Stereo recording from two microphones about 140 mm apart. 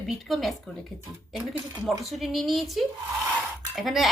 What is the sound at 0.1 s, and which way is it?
A woman's voice, centre (ahead or behind).